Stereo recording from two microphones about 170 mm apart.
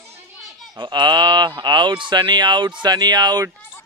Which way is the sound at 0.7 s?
25° right (ahead or behind).